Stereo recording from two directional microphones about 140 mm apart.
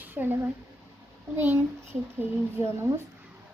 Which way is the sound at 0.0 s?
15° right (ahead or behind).